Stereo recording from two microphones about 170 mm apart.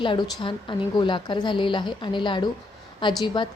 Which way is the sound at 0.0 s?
30° left (ahead or behind).